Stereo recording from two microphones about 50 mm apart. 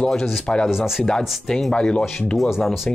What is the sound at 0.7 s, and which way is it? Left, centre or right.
Speech, centre.